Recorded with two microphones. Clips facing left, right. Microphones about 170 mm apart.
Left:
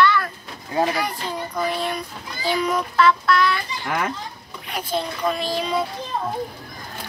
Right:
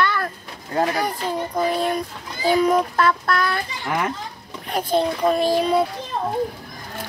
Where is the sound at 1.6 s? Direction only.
40° right (ahead or behind).